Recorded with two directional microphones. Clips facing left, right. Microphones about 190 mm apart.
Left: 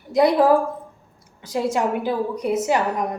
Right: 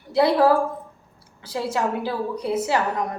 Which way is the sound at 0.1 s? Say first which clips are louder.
Left 2 dB; 15° left (ahead or behind).